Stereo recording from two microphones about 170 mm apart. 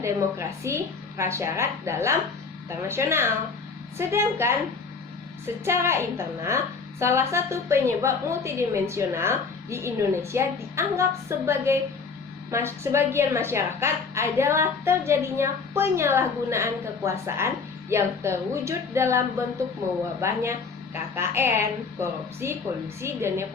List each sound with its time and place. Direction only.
0.0 s a woman's voice: 15° right (ahead or behind)
5.6 s a woman's voice: 15° right (ahead or behind)
20.2 s a woman's voice: 15° right (ahead or behind)